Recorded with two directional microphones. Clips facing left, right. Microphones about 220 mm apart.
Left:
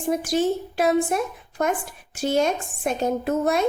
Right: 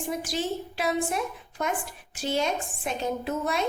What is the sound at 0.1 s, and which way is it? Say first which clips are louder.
A woman's voice: left 9 dB; 50° left (ahead or behind).